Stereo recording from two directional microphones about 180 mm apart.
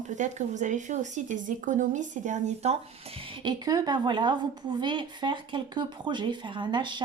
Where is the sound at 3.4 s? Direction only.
20° right (ahead or behind).